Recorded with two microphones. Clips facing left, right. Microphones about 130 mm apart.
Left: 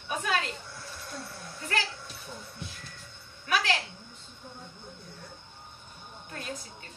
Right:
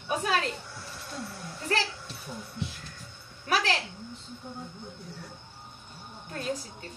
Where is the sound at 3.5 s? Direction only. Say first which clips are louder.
Right 1 dB; 35° right (ahead or behind).